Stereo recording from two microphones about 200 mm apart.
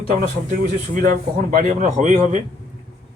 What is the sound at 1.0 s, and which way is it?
Speech, 40° right (ahead or behind).